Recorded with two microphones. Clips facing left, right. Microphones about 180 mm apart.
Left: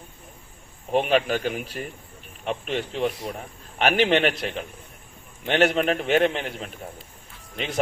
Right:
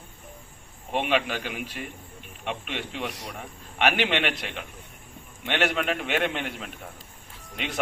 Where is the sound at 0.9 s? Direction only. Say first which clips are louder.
Left 5 dB; 40° left (ahead or behind).